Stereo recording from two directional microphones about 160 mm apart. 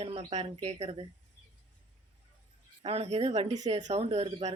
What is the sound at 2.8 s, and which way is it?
Speech, 40° right (ahead or behind).